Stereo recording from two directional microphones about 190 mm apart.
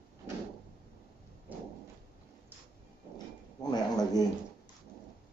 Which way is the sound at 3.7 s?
20° left (ahead or behind).